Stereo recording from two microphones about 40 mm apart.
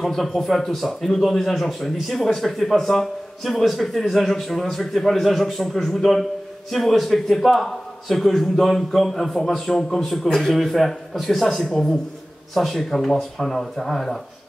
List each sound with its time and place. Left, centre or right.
0.0 s a man's voice: centre
11.6 s a man's voice: centre